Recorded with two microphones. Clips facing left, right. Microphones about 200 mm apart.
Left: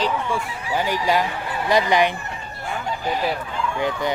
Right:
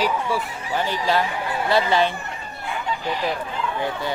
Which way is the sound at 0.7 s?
15° left (ahead or behind).